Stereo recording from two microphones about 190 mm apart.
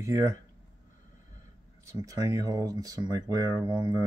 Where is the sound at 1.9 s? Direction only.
15° right (ahead or behind).